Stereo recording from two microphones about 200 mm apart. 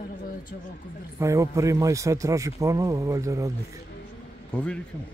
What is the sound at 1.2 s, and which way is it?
A man's voice, 15° right (ahead or behind).